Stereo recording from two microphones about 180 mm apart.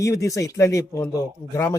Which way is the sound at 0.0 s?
15° left (ahead or behind).